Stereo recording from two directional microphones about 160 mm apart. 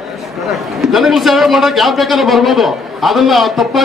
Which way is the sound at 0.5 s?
Centre (ahead or behind).